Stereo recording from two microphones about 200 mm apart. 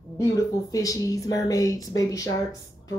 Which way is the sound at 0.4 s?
15° left (ahead or behind).